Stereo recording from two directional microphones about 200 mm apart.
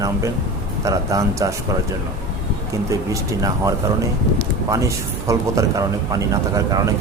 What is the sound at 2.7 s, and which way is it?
A man's voice, 15° right (ahead or behind).